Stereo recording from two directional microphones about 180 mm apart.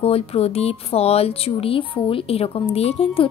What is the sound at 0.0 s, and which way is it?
A woman's voice, 35° left (ahead or behind).